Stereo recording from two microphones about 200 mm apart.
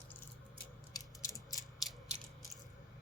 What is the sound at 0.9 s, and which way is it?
Mechanisms, 20° left (ahead or behind).